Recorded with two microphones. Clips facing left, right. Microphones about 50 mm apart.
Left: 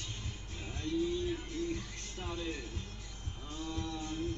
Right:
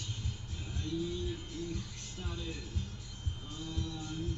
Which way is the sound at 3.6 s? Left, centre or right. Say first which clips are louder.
Left 3 dB; left.